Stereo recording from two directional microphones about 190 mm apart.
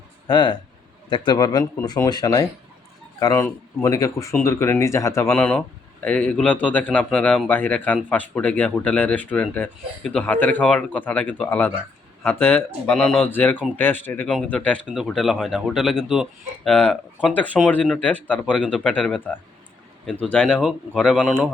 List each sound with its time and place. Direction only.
0.3 s speech: 25° left (ahead or behind); by 21.5 s centre (ahead or behind)